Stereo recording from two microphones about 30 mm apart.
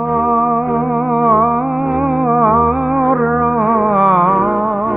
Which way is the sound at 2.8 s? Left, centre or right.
Centre.